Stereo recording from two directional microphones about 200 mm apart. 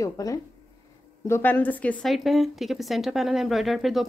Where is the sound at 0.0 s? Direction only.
15° left (ahead or behind).